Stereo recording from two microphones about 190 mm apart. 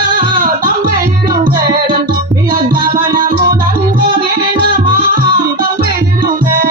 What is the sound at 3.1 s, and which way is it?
Music, 45° right (ahead or behind).